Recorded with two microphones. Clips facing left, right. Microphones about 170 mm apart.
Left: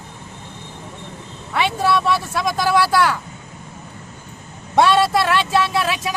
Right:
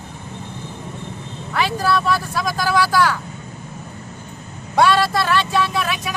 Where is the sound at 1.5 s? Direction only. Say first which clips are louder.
Left 1 dB; centre (ahead or behind).